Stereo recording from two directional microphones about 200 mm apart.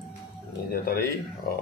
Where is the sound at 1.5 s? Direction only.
50° left (ahead or behind).